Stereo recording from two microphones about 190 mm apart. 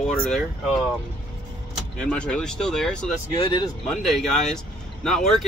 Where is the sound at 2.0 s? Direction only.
5° left (ahead or behind).